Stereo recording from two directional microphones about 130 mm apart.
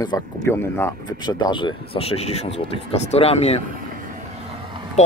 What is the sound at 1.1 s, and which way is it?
Speech, 35° left (ahead or behind).